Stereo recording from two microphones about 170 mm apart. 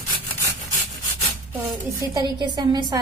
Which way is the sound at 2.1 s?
25° right (ahead or behind).